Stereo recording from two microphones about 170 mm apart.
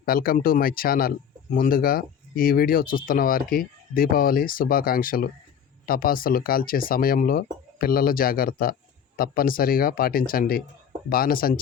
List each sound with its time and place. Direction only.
0.0 s speech: 60° left (ahead or behind)